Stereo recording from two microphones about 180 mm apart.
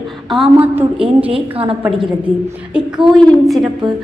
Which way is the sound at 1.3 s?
30° right (ahead or behind).